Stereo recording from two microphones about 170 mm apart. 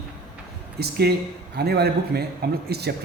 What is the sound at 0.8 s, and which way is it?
Speech, 70° right (ahead or behind).